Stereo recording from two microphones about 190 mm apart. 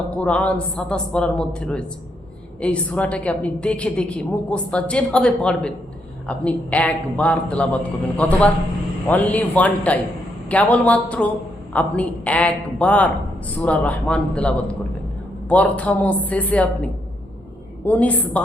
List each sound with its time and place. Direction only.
0.2 s a man's voice: 5° left (ahead or behind)